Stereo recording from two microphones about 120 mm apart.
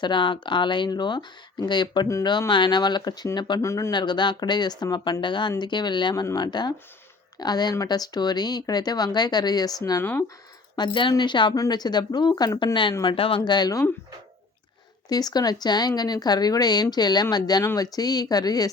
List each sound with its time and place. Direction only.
0.0 s speech: 40° left (ahead or behind)
3.6 s speech: 25° left (ahead or behind)
3.9 s speech: 40° left (ahead or behind)
10.0 s speech: 15° left (ahead or behind)
10.8 s speech: 40° left (ahead or behind)
15.1 s speech: 35° left (ahead or behind)